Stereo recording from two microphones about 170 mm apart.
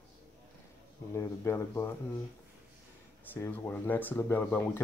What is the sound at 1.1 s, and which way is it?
Speech, 15° left (ahead or behind).